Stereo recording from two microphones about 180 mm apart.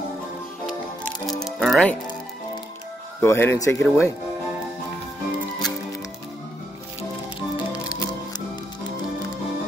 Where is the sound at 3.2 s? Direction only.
15° left (ahead or behind).